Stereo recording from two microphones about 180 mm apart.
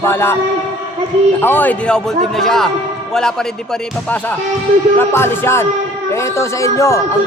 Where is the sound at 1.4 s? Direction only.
10° left (ahead or behind).